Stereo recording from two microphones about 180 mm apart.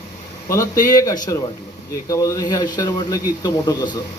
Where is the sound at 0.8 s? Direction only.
20° left (ahead or behind).